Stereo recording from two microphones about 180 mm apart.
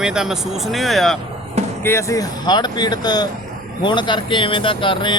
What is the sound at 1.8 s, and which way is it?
Speech, 15° left (ahead or behind).